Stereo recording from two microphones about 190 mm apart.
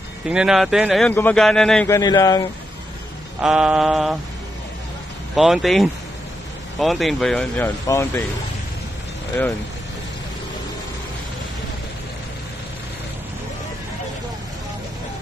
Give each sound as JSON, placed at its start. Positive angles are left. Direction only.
{"t": 0.3, "sound": "speech", "side_deg": -5}
{"t": 1.9, "sound": "speech", "side_deg": 20}
{"t": 3.3, "sound": "speech", "side_deg": -5}
{"t": 5.3, "sound": "speech", "side_deg": 0}